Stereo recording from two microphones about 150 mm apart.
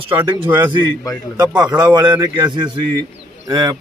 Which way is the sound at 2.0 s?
25° right (ahead or behind).